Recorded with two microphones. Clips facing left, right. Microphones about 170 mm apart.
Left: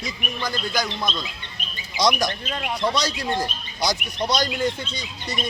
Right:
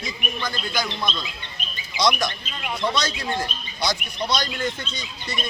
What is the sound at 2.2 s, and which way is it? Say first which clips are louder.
Speech: left 2 dB; 50° left (ahead or behind).